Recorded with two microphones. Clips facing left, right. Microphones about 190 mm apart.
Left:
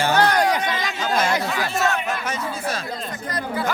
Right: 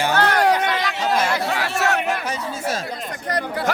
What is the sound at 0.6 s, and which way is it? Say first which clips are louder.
Chatter: right 3 dB; 60° right (ahead or behind).